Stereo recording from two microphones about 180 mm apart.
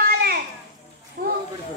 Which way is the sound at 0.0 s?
60° right (ahead or behind).